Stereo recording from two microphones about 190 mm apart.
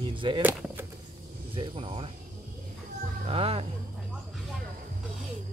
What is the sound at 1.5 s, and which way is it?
Speech, 30° right (ahead or behind).